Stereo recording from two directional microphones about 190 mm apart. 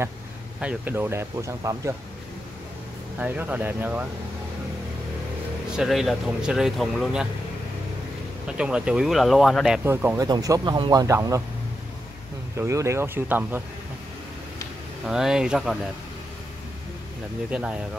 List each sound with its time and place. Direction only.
0.6 s speech: 10° right (ahead or behind)
3.2 s speech: 10° right (ahead or behind)
5.7 s speech: centre (ahead or behind)
8.5 s speech: 5° right (ahead or behind)
9.8 s speech: 15° right (ahead or behind)
12.5 s speech: 15° right (ahead or behind)
15.0 s speech: 5° right (ahead or behind)
17.5 s speech: 5° right (ahead or behind)